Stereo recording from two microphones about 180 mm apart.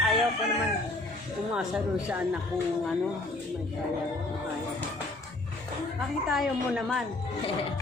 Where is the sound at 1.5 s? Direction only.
5° right (ahead or behind).